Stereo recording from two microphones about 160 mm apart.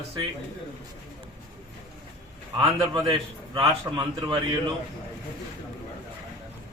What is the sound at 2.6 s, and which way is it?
A man's voice, 25° right (ahead or behind).